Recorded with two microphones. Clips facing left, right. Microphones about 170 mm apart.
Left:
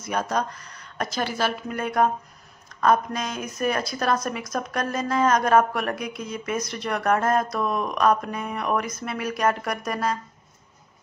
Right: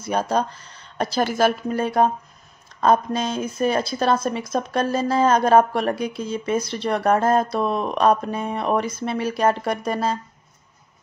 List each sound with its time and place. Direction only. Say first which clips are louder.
0.0 s speech: right 4 dB; 30° right (ahead or behind)
1.2 s speech: right 7 dB; 45° right (ahead or behind)
1.7 s speech: right 3 dB; 30° right (ahead or behind)